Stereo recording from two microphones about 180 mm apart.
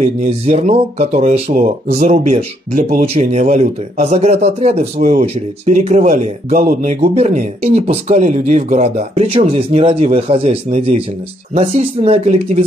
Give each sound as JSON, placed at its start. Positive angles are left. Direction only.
{"t": 0.0, "sound": "speech", "side_deg": -40}
{"t": 7.0, "sound": "speech", "side_deg": -40}